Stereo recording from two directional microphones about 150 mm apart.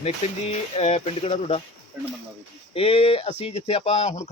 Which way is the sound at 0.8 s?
45° left (ahead or behind).